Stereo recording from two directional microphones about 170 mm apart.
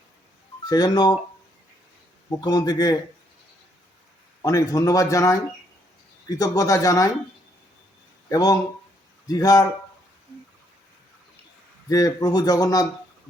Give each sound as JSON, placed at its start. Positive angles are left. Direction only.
{"t": 0.6, "sound": "speech", "side_deg": 25}
{"t": 2.4, "sound": "speech", "side_deg": 25}
{"t": 4.4, "sound": "speech", "side_deg": 20}
{"t": 8.3, "sound": "a man's voice", "side_deg": 20}
{"t": 11.9, "sound": "speech", "side_deg": 20}